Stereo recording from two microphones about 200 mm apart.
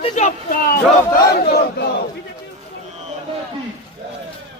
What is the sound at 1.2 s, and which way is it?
Battle cry, 50° left (ahead or behind).